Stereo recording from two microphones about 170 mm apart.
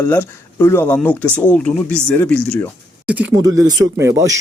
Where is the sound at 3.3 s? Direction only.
20° right (ahead or behind).